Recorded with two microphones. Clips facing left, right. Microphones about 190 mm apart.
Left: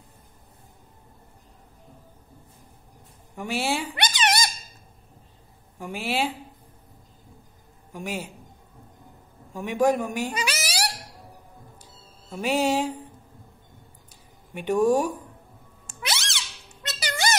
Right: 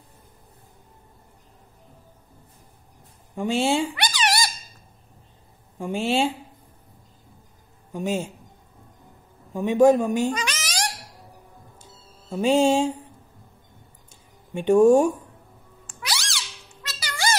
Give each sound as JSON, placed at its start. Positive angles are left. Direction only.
{"t": 3.3, "sound": "speech", "side_deg": -25}
{"t": 3.9, "sound": "cat", "side_deg": 20}
{"t": 5.8, "sound": "speech", "side_deg": -25}
{"t": 7.9, "sound": "speech", "side_deg": -25}
{"t": 9.5, "sound": "speech", "side_deg": -25}
{"t": 10.3, "sound": "a sound", "side_deg": 10}
{"t": 11.8, "sound": "music", "side_deg": -25}
{"t": 14.5, "sound": "speech", "side_deg": -25}
{"t": 16.0, "sound": "a sound", "side_deg": 20}